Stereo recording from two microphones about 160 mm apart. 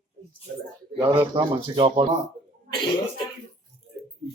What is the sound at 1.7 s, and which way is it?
Speech, 35° right (ahead or behind).